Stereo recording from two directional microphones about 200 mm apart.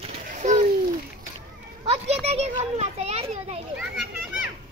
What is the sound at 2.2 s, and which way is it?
A child's voice, 30° right (ahead or behind).